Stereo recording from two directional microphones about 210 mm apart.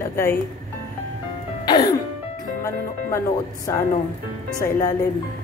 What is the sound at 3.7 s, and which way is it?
Speech, 15° left (ahead or behind).